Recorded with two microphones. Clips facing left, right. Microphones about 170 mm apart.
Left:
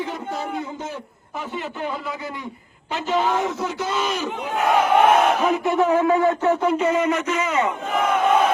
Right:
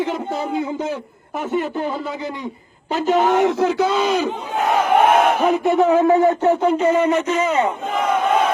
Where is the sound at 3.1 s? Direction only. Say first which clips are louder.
Right 5 dB; 75° right (ahead or behind).